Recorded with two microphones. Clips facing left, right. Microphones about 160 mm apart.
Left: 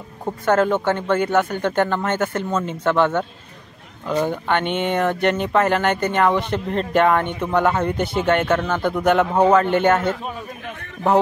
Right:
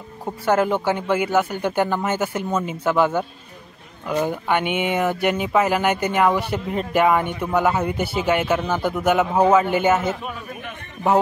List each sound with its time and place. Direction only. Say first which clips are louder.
0.2 s speech: left 1 dB; 10° right (ahead or behind)